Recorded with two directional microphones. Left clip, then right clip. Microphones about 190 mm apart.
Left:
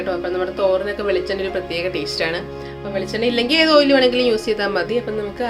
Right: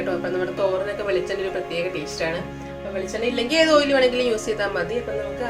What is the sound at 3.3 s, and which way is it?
Speech, 35° left (ahead or behind).